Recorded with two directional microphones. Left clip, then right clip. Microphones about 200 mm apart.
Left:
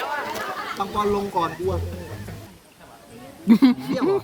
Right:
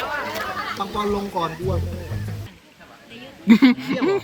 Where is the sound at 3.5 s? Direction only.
10° left (ahead or behind).